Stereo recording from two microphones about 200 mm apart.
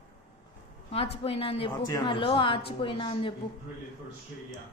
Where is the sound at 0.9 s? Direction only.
30° left (ahead or behind).